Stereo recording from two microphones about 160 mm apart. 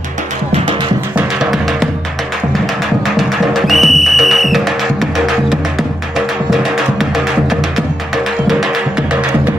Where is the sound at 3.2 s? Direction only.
Centre (ahead or behind).